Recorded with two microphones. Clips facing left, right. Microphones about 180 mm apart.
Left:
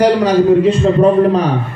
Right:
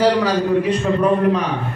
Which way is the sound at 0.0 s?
25° left (ahead or behind).